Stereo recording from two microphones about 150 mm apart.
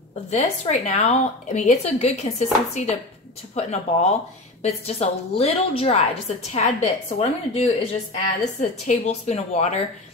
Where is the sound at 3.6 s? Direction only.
50° left (ahead or behind).